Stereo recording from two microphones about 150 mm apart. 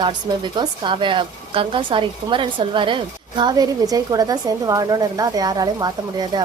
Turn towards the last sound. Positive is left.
turn(degrees=-25)  # may be behind; listen again after turning